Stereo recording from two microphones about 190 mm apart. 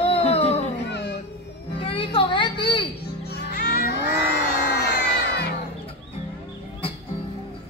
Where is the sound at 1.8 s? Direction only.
30° left (ahead or behind).